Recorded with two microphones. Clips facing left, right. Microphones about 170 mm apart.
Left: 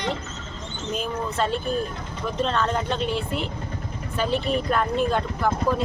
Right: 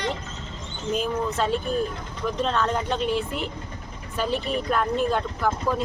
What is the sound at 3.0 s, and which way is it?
Speech, 45° right (ahead or behind).